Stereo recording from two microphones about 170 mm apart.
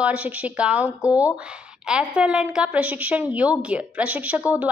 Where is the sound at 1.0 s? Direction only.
20° left (ahead or behind).